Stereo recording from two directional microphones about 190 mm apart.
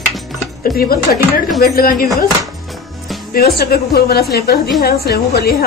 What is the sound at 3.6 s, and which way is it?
A woman's voice, 55° left (ahead or behind).